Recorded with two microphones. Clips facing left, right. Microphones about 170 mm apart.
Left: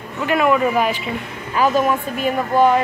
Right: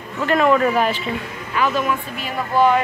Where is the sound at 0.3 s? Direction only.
10° left (ahead or behind).